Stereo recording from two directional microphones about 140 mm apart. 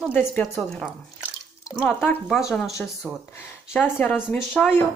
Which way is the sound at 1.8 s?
15° left (ahead or behind).